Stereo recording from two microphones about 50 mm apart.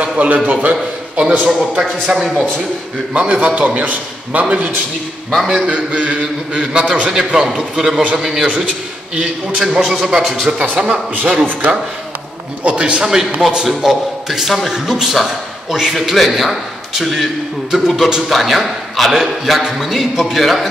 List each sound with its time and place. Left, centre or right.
0.0 s a sound: right
0.5 s a man's voice: right
5.7 s a man's voice: right; by 8.5 s centre
9.1 s a man's voice: centre
9.8 s a man's voice: centre
10.8 s a man's voice: centre
11.4 s speech: right
12.6 s a man's voice: right; by 20.6 s centre